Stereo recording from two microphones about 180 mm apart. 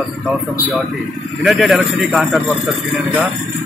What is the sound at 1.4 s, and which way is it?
A man's voice, centre (ahead or behind).